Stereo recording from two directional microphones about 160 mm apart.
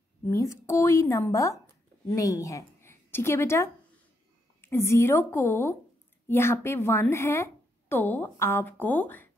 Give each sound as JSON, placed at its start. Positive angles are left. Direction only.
{"t": 0.2, "sound": "a woman's voice", "side_deg": 20}